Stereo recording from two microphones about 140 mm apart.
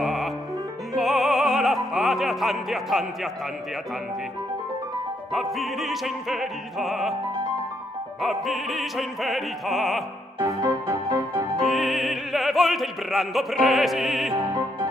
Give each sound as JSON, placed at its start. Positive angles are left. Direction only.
{"t": 0.0, "sound": "music", "side_deg": 0}
{"t": 2.0, "sound": "speech", "side_deg": 0}
{"t": 5.3, "sound": "opera", "side_deg": 0}
{"t": 8.2, "sound": "opera", "side_deg": 0}
{"t": 10.4, "sound": "music", "side_deg": -25}
{"t": 11.6, "sound": "opera", "side_deg": 0}
{"t": 14.3, "sound": "music", "side_deg": -20}